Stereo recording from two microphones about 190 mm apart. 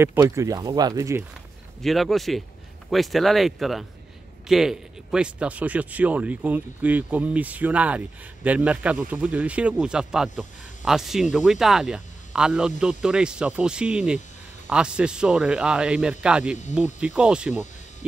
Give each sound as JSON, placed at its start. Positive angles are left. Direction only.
{"t": 0.0, "sound": "speech", "side_deg": -15}
{"t": 1.8, "sound": "speech", "side_deg": 0}